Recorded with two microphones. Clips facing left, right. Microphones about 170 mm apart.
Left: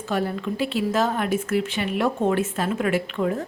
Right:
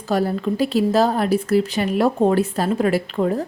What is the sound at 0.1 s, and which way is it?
A woman's voice, 40° right (ahead or behind).